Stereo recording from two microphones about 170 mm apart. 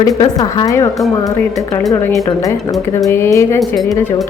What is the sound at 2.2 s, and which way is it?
A woman's voice, 20° left (ahead or behind).